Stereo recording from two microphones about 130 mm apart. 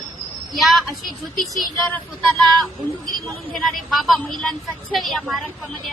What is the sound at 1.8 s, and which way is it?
A woman's voice, 10° left (ahead or behind).